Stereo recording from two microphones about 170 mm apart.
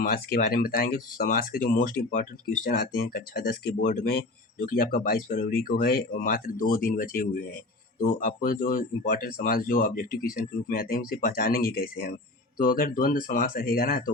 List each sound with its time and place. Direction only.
0.0 s speech: 65° left (ahead or behind)